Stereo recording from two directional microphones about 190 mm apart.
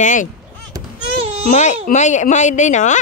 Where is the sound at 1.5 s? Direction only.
40° left (ahead or behind).